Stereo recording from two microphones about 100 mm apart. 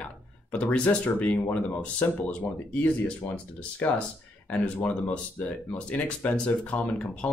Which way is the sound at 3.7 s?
15° left (ahead or behind).